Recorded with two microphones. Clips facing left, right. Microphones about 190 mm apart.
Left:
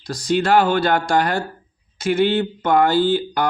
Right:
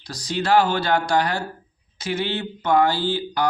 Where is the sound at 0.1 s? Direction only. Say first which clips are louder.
Left 3 dB; 50° left (ahead or behind).